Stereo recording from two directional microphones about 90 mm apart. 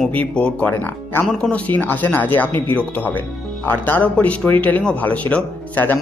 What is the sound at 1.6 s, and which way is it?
Speech, 20° left (ahead or behind).